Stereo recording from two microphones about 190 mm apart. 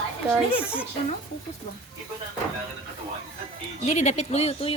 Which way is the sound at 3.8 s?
40° left (ahead or behind).